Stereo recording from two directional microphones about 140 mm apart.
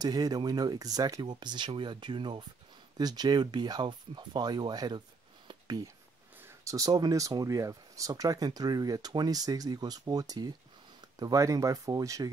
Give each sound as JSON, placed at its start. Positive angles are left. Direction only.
{"t": 0.0, "sound": "speech", "side_deg": -30}
{"t": 5.5, "sound": "a sound", "side_deg": -30}
{"t": 6.4, "sound": "speech", "side_deg": -20}